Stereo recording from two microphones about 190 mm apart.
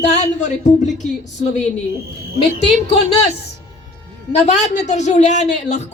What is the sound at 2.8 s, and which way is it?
Speech, 35° left (ahead or behind).